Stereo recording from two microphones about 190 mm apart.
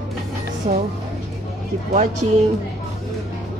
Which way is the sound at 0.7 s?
40° right (ahead or behind).